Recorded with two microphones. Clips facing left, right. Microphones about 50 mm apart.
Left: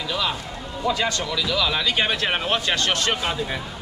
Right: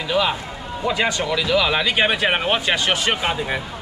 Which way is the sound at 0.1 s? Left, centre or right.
Centre.